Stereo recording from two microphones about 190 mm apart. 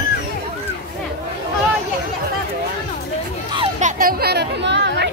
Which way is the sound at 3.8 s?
45° right (ahead or behind).